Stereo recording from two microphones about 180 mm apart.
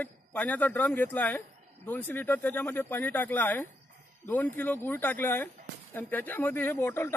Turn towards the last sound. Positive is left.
turn(degrees=10)  # may be behind; listen again after turning